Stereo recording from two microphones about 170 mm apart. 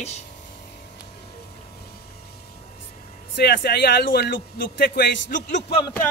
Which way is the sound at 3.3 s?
70° left (ahead or behind).